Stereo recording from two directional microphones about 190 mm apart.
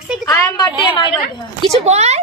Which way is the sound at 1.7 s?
35° right (ahead or behind).